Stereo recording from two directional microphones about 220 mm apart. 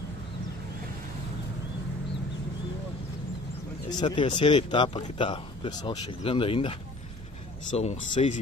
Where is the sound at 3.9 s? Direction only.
20° left (ahead or behind).